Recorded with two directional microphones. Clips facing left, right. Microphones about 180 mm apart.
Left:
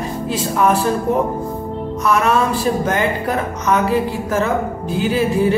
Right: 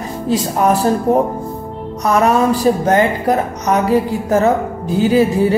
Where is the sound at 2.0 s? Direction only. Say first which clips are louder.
Right 3 dB; 40° right (ahead or behind).